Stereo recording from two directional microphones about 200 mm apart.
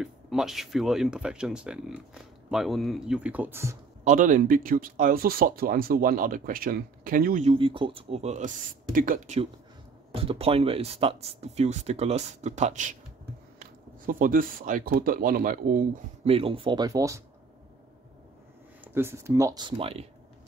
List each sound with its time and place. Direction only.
0.0 s speech: centre (ahead or behind)
4.0 s speech: 40° right (ahead or behind)
7.4 s speech: 25° right (ahead or behind); by 15.8 s 45° right (ahead or behind)
16.3 s speech: 30° right (ahead or behind)
18.9 s speech: 10° right (ahead or behind); by 20.1 s 30° right (ahead or behind)